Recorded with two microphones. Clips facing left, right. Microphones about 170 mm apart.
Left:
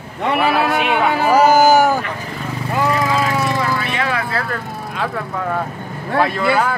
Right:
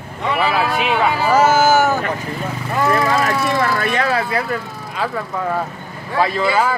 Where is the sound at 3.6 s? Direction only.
45° right (ahead or behind).